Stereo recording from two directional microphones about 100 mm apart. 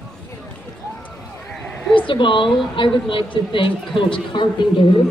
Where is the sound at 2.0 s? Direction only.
55° left (ahead or behind).